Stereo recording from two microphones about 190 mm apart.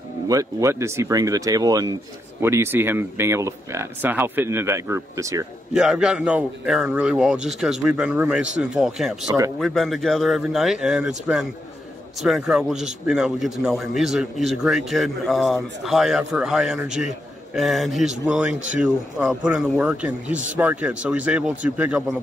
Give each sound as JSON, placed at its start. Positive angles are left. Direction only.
{"t": 0.3, "sound": "a man's voice", "side_deg": -15}
{"t": 5.7, "sound": "a man's voice", "side_deg": -5}